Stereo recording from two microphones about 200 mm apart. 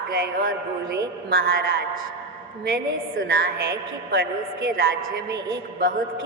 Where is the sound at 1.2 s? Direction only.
50° right (ahead or behind).